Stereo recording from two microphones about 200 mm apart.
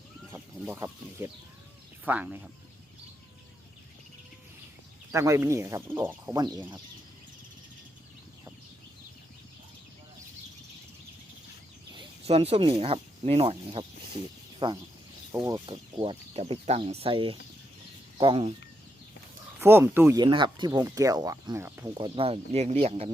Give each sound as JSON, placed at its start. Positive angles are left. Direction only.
{"t": 2.0, "sound": "speech", "side_deg": -10}
{"t": 5.1, "sound": "speech", "side_deg": -15}
{"t": 6.4, "sound": "speech", "side_deg": -20}
{"t": 11.9, "sound": "speech", "side_deg": -30}
{"t": 19.5, "sound": "speech", "side_deg": -10}
{"t": 21.9, "sound": "speech", "side_deg": -25}